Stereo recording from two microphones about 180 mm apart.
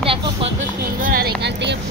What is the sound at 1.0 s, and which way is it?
Speech, 50° right (ahead or behind).